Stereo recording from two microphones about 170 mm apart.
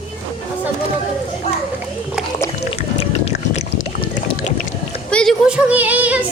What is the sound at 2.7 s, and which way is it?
Boat, 35° left (ahead or behind).